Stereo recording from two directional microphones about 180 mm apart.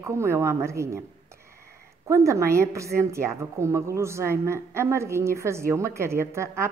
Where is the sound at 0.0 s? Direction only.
15° right (ahead or behind).